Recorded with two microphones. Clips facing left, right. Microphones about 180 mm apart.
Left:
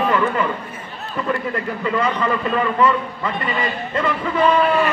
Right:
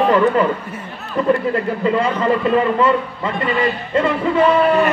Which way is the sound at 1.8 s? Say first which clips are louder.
Even; 30° right (ahead or behind).